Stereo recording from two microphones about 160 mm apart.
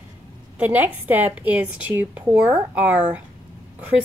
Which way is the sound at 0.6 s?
10° right (ahead or behind).